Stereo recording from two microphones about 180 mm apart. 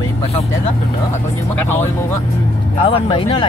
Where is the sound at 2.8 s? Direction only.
30° left (ahead or behind).